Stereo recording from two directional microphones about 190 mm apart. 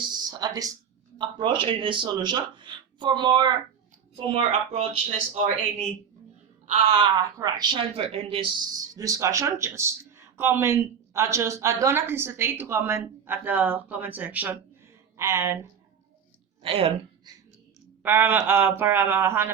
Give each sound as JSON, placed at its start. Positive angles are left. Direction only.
{"t": 0.0, "sound": "a sound", "side_deg": -20}
{"t": 1.2, "sound": "a woman's voice", "side_deg": -25}
{"t": 7.0, "sound": "speech", "side_deg": -20}
{"t": 16.6, "sound": "a woman's voice", "side_deg": -30}
{"t": 18.0, "sound": "speech", "side_deg": -10}